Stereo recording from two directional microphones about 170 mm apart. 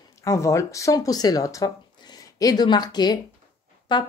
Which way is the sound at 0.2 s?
20° left (ahead or behind).